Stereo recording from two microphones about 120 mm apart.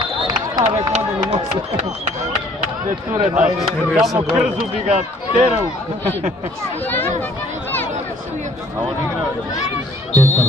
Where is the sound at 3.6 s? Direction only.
Centre (ahead or behind).